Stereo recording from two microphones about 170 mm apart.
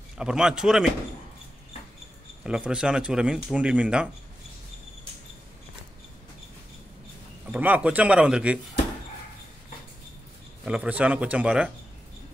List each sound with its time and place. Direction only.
0.2 s speech: 5° right (ahead or behind)
2.4 s speech: 5° right (ahead or behind)
7.5 s speech: 10° right (ahead or behind)
10.6 s speech: 10° right (ahead or behind)